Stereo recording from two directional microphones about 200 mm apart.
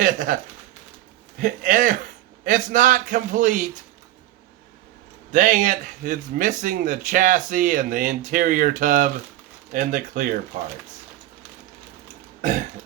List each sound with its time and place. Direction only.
0.0 s speech: 40° right (ahead or behind)
1.4 s speech: 40° right (ahead or behind)
5.3 s speech: 40° right (ahead or behind)
12.4 s burping: 40° right (ahead or behind)